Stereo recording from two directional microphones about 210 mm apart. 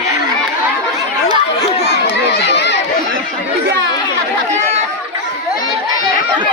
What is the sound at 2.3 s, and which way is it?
Crowd, 55° left (ahead or behind).